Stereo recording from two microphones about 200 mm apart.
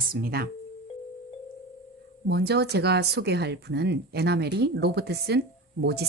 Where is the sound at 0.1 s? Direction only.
50° right (ahead or behind).